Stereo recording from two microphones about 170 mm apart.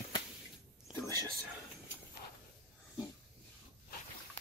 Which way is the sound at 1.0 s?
20° right (ahead or behind).